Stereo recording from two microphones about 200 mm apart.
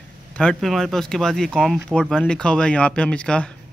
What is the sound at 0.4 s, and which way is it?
Speech, 5° left (ahead or behind).